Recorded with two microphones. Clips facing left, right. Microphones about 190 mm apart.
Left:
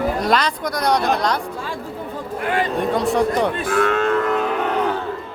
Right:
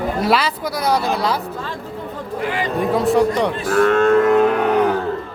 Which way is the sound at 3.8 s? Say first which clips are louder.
Right 7 dB; 50° right (ahead or behind).